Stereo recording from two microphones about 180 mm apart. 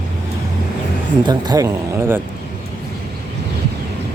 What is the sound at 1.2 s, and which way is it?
Speech, 20° right (ahead or behind).